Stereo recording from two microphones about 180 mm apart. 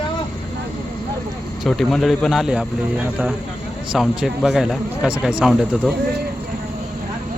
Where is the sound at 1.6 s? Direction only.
Centre (ahead or behind).